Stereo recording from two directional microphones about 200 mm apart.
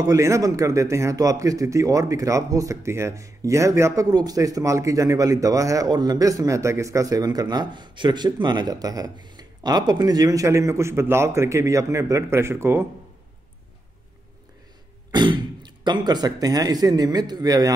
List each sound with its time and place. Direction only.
0.0 s a man's voice: 15° right (ahead or behind)
15.0 s speech: 20° right (ahead or behind)